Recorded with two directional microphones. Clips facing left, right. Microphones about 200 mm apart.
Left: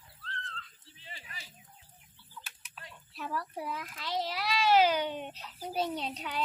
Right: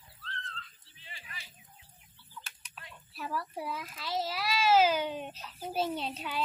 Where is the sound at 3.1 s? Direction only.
5° right (ahead or behind).